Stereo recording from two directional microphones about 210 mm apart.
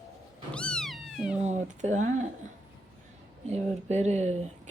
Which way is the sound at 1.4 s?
35° right (ahead or behind).